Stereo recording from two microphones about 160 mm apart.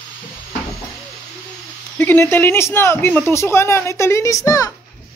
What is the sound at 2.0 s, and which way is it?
Speech, 10° left (ahead or behind).